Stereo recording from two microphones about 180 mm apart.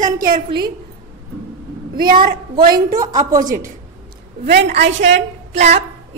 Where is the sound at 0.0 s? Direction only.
50° right (ahead or behind).